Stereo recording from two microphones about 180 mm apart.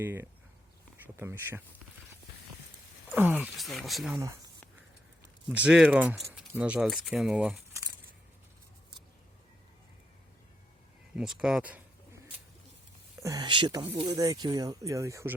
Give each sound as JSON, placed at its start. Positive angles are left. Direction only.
{"t": 0.0, "sound": "speech", "side_deg": -10}
{"t": 3.1, "sound": "speech", "side_deg": -10}
{"t": 4.2, "sound": "speech", "side_deg": -15}
{"t": 5.5, "sound": "speech", "side_deg": -5}
{"t": 11.1, "sound": "speech", "side_deg": -5}
{"t": 13.1, "sound": "speech", "side_deg": -20}